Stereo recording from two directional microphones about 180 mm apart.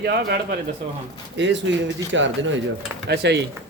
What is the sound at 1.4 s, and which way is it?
Speech, 90° right.